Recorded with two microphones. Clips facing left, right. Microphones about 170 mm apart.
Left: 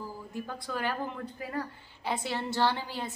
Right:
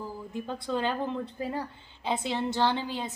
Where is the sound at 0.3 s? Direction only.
20° right (ahead or behind).